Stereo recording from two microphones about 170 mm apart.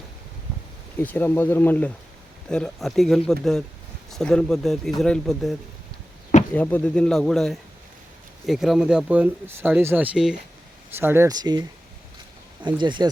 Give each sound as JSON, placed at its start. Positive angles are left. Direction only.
{"t": 1.0, "sound": "speech", "side_deg": 10}
{"t": 12.6, "sound": "speech", "side_deg": -25}